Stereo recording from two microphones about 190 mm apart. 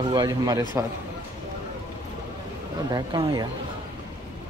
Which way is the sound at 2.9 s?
20° right (ahead or behind).